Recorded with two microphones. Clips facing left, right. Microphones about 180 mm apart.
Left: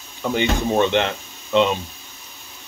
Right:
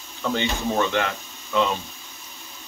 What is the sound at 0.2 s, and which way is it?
Speech, 15° left (ahead or behind).